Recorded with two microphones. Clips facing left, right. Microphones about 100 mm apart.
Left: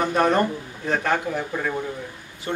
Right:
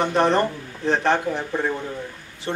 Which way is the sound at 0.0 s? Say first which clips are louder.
Right 1 dB; 30° right (ahead or behind).